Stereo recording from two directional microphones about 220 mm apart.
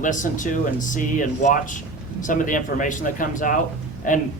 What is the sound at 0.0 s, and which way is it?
A man's voice, 35° left (ahead or behind).